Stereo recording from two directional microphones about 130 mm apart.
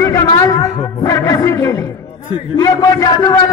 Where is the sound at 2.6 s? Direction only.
25° left (ahead or behind).